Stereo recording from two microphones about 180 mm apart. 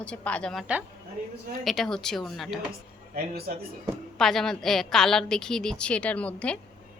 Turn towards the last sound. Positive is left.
turn(degrees=5)  # may be behind; listen again after turning